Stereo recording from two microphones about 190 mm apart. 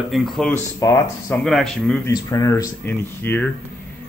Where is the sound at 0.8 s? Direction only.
15° left (ahead or behind).